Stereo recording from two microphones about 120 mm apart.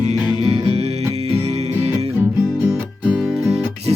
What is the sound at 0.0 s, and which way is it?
Music, 65° right (ahead or behind).